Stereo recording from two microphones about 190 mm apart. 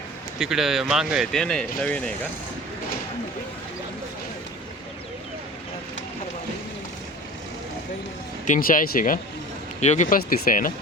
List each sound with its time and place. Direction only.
0.3 s speech: centre (ahead or behind)
8.4 s speech: 45° left (ahead or behind)